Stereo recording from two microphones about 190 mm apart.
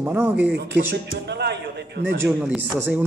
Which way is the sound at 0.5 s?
60° right (ahead or behind).